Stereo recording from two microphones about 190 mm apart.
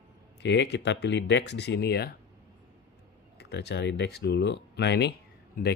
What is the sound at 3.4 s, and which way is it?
Speech, 60° left (ahead or behind).